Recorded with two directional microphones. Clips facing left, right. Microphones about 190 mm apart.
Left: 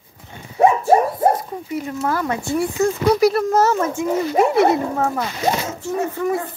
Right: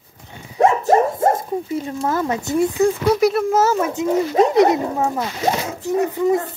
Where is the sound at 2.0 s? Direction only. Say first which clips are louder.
Right 1 dB; 20° right (ahead or behind).